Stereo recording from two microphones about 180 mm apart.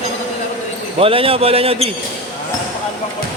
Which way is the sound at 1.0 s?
30° right (ahead or behind).